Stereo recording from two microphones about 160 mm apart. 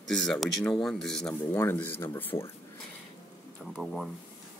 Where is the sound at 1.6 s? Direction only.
15° left (ahead or behind).